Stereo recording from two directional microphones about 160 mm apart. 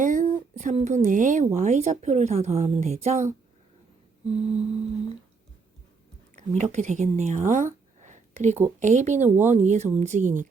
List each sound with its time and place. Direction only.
0.0 s a sound: 55° right (ahead or behind)
1.5 s speech: 45° right (ahead or behind)
4.4 s mantra: 40° right (ahead or behind)
6.3 s speech: 45° right (ahead or behind)